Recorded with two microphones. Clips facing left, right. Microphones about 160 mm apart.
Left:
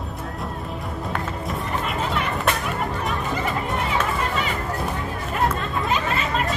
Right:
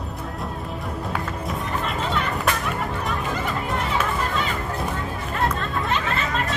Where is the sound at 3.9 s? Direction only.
5° left (ahead or behind).